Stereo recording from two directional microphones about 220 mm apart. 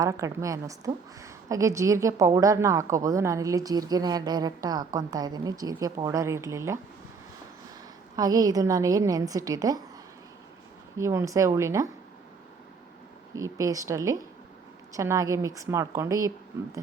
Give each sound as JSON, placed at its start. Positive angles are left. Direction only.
{"t": 0.0, "sound": "a woman's voice", "side_deg": -15}
{"t": 8.1, "sound": "a woman's voice", "side_deg": -15}
{"t": 10.9, "sound": "a woman's voice", "side_deg": -10}
{"t": 13.3, "sound": "a woman's voice", "side_deg": -15}